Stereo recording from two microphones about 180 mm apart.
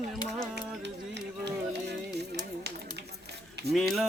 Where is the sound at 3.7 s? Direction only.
Centre (ahead or behind).